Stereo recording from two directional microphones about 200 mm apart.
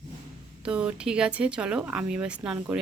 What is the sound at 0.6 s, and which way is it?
Speech, 5° right (ahead or behind).